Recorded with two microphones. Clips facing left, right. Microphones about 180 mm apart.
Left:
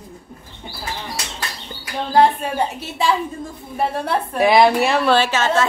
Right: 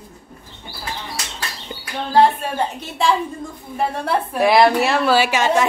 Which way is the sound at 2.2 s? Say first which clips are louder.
Even; 15° left (ahead or behind).